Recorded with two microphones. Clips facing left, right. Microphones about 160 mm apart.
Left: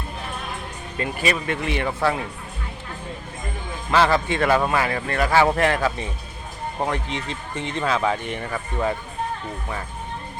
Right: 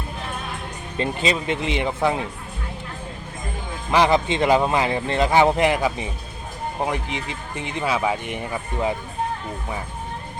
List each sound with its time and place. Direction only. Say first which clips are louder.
0.9 s speech: right 1 dB; 25° right (ahead or behind)
3.9 s speech: right 1 dB; 15° right (ahead or behind)